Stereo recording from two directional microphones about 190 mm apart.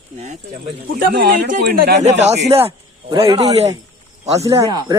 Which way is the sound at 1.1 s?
55° right (ahead or behind).